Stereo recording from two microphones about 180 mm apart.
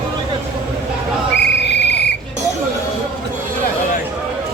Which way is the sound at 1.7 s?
70° left (ahead or behind).